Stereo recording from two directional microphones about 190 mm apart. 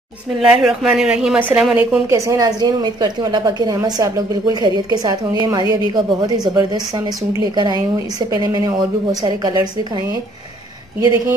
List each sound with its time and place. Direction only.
0.4 s a woman's voice: centre (ahead or behind); by 9.6 s 20° right (ahead or behind)